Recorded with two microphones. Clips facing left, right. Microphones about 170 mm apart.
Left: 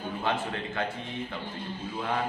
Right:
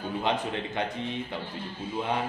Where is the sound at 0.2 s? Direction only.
20° right (ahead or behind).